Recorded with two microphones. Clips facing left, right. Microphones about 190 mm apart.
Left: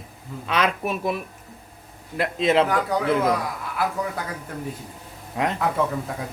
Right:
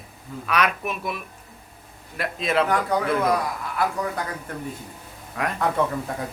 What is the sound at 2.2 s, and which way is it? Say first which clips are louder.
Speech: left 4 dB; 25° left (ahead or behind).